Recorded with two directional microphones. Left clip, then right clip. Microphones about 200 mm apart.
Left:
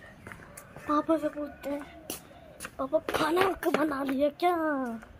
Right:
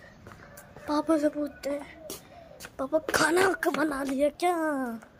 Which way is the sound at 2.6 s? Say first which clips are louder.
Right 1 dB; 10° right (ahead or behind).